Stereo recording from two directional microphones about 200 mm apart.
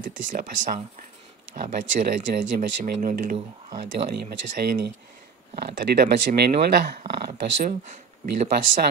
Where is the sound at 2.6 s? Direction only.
45° right (ahead or behind).